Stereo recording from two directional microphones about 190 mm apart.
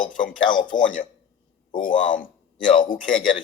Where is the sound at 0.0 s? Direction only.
45° left (ahead or behind).